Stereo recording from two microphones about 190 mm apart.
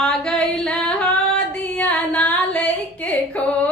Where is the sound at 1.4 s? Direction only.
5° left (ahead or behind).